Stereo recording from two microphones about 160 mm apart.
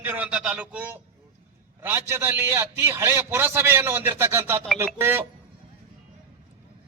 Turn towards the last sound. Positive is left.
turn(degrees=-15)  # may be behind; listen again after turning